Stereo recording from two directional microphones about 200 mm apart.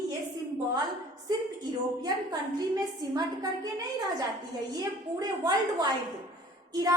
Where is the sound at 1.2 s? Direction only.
20° right (ahead or behind).